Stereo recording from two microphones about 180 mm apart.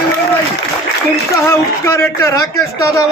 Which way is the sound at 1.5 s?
15° left (ahead or behind).